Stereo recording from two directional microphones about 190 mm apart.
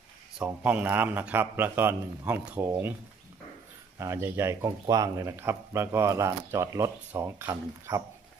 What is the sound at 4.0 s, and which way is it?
A man's voice, 15° right (ahead or behind).